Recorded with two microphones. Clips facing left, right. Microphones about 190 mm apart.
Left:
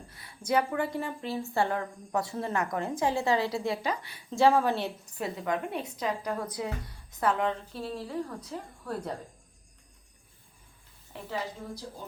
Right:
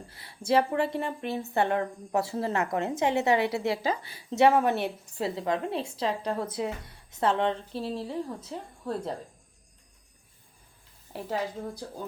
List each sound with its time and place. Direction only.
0.1 s a woman's voice: 30° right (ahead or behind)
11.1 s speech: 50° right (ahead or behind)